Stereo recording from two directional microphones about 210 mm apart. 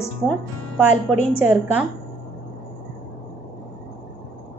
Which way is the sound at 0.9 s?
35° left (ahead or behind).